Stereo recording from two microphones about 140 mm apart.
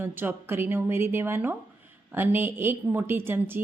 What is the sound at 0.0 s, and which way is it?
Speech, 15° right (ahead or behind).